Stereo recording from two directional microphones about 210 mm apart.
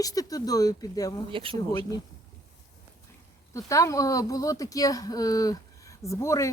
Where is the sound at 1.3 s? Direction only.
25° right (ahead or behind).